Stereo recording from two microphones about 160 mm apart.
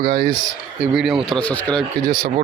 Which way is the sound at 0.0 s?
80° right.